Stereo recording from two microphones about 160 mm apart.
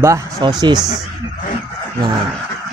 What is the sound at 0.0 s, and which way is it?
Speech, 20° right (ahead or behind).